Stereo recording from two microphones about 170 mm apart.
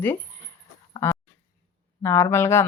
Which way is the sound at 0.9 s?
15° left (ahead or behind).